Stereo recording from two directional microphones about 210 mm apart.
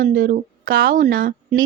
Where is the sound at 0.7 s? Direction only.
65° right (ahead or behind).